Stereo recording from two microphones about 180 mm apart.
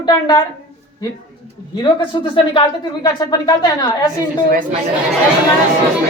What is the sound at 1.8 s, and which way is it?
A woman's voice, 25° left (ahead or behind).